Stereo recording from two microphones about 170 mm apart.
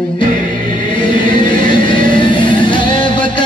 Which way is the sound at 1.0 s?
30° left (ahead or behind).